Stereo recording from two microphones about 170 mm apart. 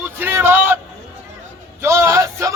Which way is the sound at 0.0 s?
15° right (ahead or behind).